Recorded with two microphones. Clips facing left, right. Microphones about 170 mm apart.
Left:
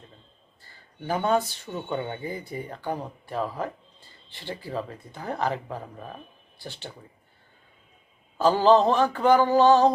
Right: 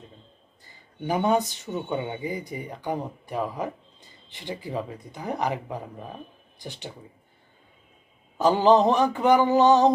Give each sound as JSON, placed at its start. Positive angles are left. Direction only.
{"t": 0.6, "sound": "a sound", "side_deg": -15}
{"t": 1.9, "sound": "speech", "side_deg": -15}
{"t": 8.4, "sound": "speech", "side_deg": -20}